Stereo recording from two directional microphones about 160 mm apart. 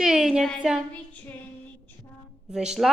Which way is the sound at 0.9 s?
10° left (ahead or behind).